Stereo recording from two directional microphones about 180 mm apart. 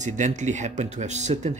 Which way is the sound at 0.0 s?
40° right (ahead or behind).